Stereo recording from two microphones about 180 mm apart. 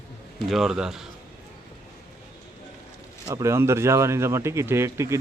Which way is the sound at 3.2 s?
15° right (ahead or behind).